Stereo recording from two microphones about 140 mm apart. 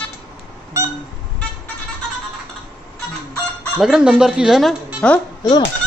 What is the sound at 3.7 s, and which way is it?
Speech, 5° right (ahead or behind).